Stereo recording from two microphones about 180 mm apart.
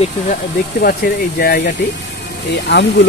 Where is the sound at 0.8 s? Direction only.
55° left (ahead or behind).